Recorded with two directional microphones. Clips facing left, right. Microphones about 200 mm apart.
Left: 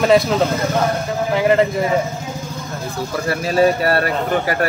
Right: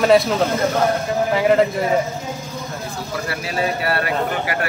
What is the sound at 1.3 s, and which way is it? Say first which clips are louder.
Speech: left 1 dB; centre (ahead or behind).